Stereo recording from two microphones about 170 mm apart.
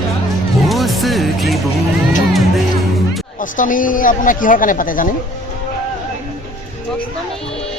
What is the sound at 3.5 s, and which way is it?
Speech, 50° left (ahead or behind).